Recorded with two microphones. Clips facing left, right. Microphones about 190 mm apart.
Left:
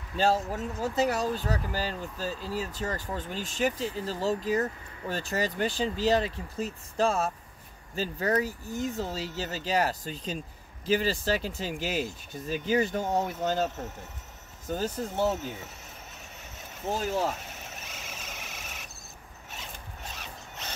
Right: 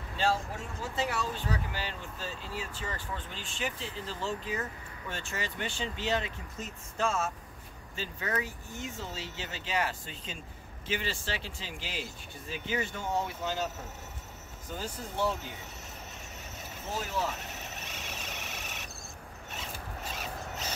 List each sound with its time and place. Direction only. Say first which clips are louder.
0.2 s speech: left 5 dB; 40° left (ahead or behind)
14.7 s speech: left 8 dB; 45° left (ahead or behind)
17.1 s speech: left 3 dB; 40° left (ahead or behind)
17.4 s vehicle: right 1 dB; centre (ahead or behind)
19.5 s zipper: right 3 dB; centre (ahead or behind)